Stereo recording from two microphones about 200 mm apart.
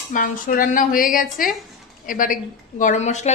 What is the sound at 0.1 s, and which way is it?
A woman's voice, 45° left (ahead or behind).